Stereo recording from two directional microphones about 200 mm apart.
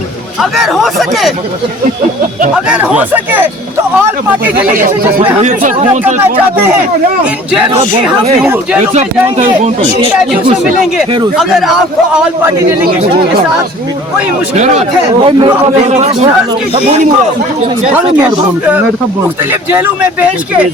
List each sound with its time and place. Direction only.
0.5 s a man's voice: centre (ahead or behind)
2.6 s speech: 5° right (ahead or behind)
4.7 s a man's voice: 40° right (ahead or behind)
6.1 s speech: 10° right (ahead or behind)
8.9 s a man's voice: 35° right (ahead or behind)
11.3 s a man's voice: centre (ahead or behind)
12.5 s speech: 15° right (ahead or behind)
14.5 s a man's voice: 35° right (ahead or behind)